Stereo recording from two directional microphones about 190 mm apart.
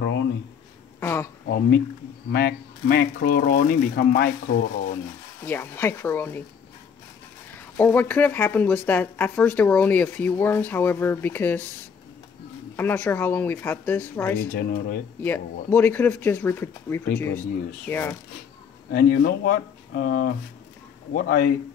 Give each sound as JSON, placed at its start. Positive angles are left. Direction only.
{"t": 0.0, "sound": "a sound", "side_deg": 70}
{"t": 1.0, "sound": "speech", "side_deg": 15}
{"t": 2.3, "sound": "speech", "side_deg": 55}
{"t": 5.4, "sound": "speech", "side_deg": 10}
{"t": 7.5, "sound": "speech", "side_deg": 10}
{"t": 12.7, "sound": "speech", "side_deg": 10}
{"t": 14.4, "sound": "speech", "side_deg": 55}
{"t": 15.2, "sound": "speech", "side_deg": 10}
{"t": 18.9, "sound": "speech", "side_deg": 55}